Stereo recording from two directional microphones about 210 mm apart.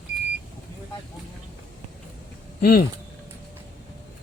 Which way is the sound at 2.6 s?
45° left (ahead or behind).